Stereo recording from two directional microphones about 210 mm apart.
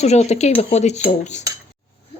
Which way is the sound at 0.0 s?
30° left (ahead or behind).